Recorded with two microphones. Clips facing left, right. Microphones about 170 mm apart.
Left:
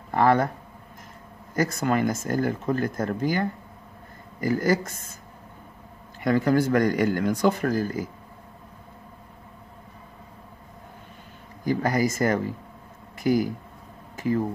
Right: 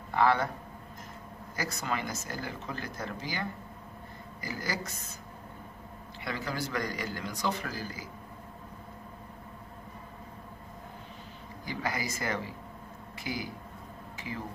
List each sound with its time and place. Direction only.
0.1 s speech: 45° left (ahead or behind)
1.5 s speech: 50° left (ahead or behind)
6.2 s speech: 50° left (ahead or behind)
11.6 s speech: 45° left (ahead or behind)
14.1 s a sound: 45° left (ahead or behind)